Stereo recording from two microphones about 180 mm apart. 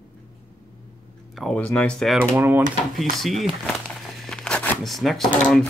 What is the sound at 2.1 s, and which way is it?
Speech, 10° right (ahead or behind).